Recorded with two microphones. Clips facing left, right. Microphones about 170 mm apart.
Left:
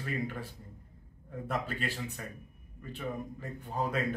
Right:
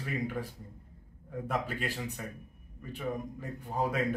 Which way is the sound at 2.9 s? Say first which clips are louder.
Right 2 dB; 15° right (ahead or behind).